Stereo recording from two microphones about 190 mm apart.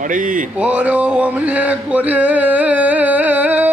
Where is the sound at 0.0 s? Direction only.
45° right (ahead or behind).